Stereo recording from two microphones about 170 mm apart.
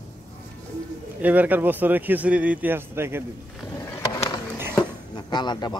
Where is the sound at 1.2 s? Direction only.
10° right (ahead or behind).